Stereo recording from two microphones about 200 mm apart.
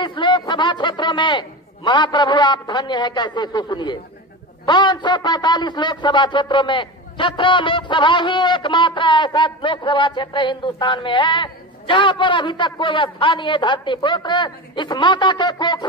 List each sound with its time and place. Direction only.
0.0 s a man's voice: 25° left (ahead or behind)